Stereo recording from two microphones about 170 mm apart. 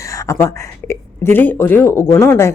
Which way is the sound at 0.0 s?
20° left (ahead or behind).